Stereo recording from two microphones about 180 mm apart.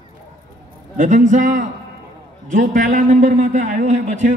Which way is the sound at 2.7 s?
45° right (ahead or behind).